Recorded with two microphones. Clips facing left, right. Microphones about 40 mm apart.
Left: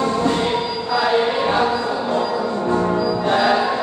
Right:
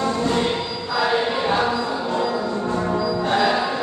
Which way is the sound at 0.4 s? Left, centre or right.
Centre.